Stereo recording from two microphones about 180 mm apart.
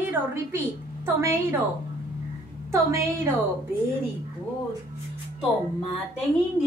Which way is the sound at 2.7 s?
15° right (ahead or behind).